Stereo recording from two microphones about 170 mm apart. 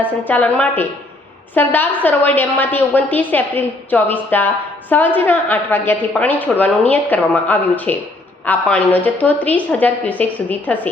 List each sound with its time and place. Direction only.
0.0 s a woman's voice: 10° left (ahead or behind)